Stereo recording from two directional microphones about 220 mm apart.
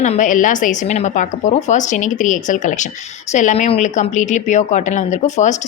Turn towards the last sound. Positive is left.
turn(degrees=35)  # may be behind; listen again after turning